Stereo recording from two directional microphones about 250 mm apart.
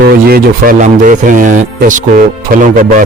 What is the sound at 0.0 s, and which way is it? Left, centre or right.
A man's voice, right.